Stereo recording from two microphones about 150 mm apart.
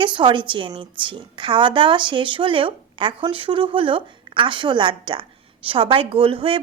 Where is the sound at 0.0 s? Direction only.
30° right (ahead or behind).